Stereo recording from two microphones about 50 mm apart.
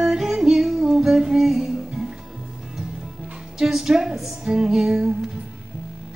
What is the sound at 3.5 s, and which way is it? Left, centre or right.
Music, centre.